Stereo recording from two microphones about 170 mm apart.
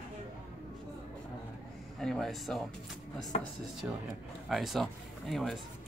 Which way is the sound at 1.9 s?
Centre (ahead or behind).